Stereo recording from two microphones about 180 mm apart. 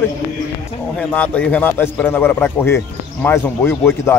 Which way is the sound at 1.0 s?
10° left (ahead or behind).